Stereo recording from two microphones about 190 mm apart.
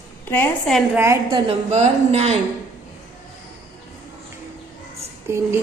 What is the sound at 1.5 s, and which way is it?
Speech, 35° right (ahead or behind).